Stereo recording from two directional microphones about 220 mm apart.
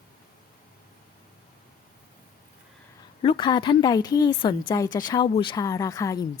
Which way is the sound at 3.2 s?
20° left (ahead or behind).